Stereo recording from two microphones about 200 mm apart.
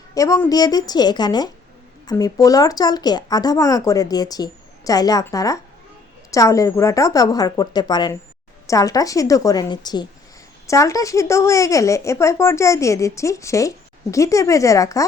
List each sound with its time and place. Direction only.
0.1 s speech: 15° left (ahead or behind)